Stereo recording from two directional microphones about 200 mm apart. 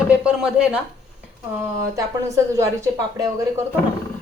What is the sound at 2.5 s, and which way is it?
Speech, 15° right (ahead or behind).